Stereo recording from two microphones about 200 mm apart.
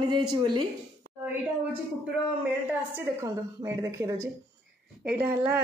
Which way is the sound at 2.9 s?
15° right (ahead or behind).